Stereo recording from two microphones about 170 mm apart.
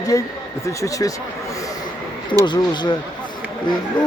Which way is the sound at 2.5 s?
25° left (ahead or behind).